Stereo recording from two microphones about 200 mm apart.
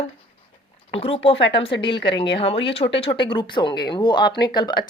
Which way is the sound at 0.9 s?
30° left (ahead or behind).